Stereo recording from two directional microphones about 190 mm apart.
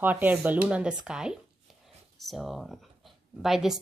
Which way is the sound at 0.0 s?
10° right (ahead or behind).